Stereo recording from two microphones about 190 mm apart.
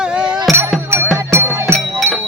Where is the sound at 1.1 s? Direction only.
15° right (ahead or behind).